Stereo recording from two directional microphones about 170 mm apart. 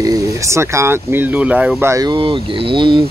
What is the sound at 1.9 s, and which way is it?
Speech, 25° right (ahead or behind).